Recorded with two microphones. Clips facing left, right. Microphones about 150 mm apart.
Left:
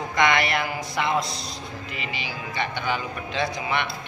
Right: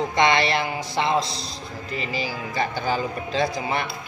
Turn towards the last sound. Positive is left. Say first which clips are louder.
# right 2 dB
turn(degrees=-35)  # may be behind; listen again after turning